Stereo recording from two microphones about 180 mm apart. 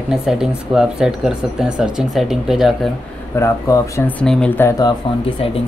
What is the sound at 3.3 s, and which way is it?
Speech, 15° left (ahead or behind).